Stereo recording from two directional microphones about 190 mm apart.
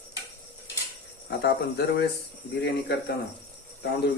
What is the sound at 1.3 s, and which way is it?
Speech, 60° left (ahead or behind).